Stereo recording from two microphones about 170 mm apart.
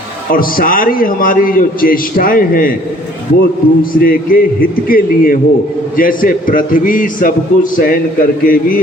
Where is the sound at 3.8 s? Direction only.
55° left (ahead or behind).